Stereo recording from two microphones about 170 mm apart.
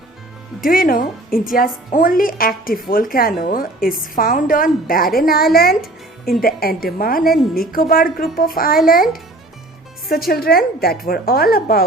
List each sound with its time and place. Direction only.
0.6 s a woman's voice: 55° left (ahead or behind)
10.1 s a woman's voice: 60° left (ahead or behind)